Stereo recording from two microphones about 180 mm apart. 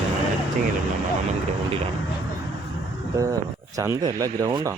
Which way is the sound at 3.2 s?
20° right (ahead or behind).